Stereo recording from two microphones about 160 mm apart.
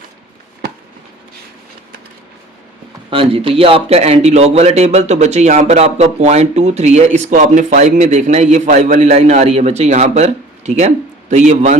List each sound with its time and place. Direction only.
3.1 s a man's voice: 35° right (ahead or behind)